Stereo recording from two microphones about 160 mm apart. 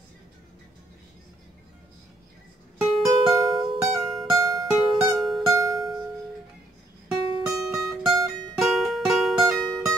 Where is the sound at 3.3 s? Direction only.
30° right (ahead or behind).